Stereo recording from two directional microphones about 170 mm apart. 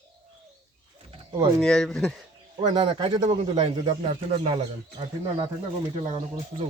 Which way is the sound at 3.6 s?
40° right (ahead or behind).